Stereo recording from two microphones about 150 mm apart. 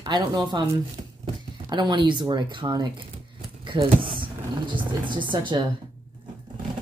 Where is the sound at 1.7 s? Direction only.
30° right (ahead or behind).